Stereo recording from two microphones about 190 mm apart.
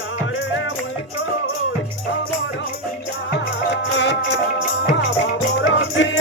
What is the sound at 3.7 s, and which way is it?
Music, 65° left (ahead or behind).